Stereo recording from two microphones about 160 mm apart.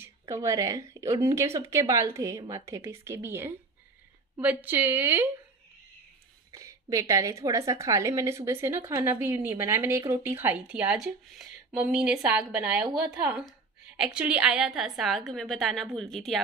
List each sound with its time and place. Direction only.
0.2 s a woman's voice: 20° right (ahead or behind)
6.5 s a woman's voice: 20° right (ahead or behind); by 16.3 s centre (ahead or behind)